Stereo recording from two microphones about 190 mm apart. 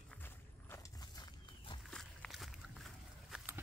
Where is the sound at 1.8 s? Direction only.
5° left (ahead or behind).